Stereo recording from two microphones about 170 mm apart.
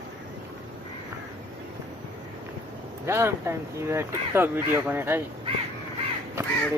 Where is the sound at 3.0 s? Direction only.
15° right (ahead or behind).